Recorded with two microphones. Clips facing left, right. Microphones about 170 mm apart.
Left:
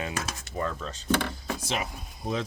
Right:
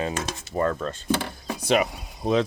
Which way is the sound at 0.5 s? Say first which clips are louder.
Right 8 dB; 55° right (ahead or behind).